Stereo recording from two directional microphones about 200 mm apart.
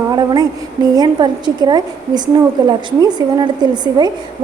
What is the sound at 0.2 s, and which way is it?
A woman's voice, 20° right (ahead or behind).